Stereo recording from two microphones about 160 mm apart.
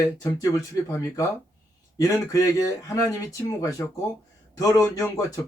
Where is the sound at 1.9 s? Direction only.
20° left (ahead or behind).